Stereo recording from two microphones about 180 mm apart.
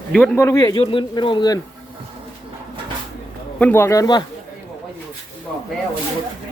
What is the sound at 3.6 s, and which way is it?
Speech, 10° left (ahead or behind).